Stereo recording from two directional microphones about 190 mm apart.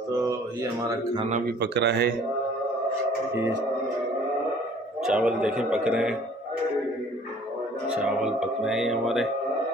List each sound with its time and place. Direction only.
0.2 s speech: 15° right (ahead or behind)
1.6 s speech: 60° right (ahead or behind)
5.0 s speech: 5° right (ahead or behind)
7.9 s speech: 5° right (ahead or behind)